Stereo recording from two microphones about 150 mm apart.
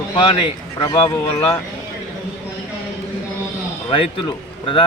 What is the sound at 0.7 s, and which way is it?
Speech, 30° left (ahead or behind).